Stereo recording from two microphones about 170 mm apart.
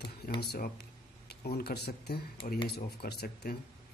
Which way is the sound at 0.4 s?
70° left (ahead or behind).